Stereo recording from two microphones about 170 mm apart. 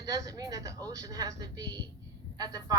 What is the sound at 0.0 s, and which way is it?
Speech, 20° right (ahead or behind).